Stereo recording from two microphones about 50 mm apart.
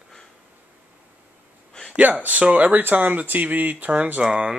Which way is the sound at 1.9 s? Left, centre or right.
Right.